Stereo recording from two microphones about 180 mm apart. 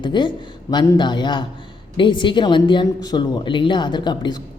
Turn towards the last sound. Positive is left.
turn(degrees=25)  # may be behind; listen again after turning